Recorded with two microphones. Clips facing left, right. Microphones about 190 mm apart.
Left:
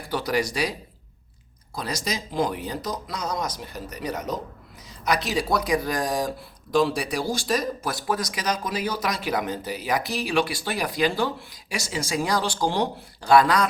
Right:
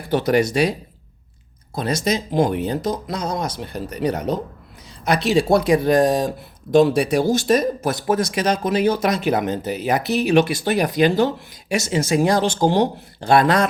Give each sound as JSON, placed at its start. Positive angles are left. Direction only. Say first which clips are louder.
{"t": 0.1, "sound": "speech", "louder": "right 8 dB", "side_deg": -25}
{"t": 1.7, "sound": "speech", "louder": "right 8 dB", "side_deg": -25}